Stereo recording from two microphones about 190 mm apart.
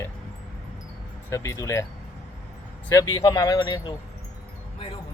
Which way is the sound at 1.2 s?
15° left (ahead or behind).